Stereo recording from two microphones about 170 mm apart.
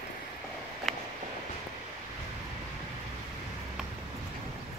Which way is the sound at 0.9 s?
Centre (ahead or behind).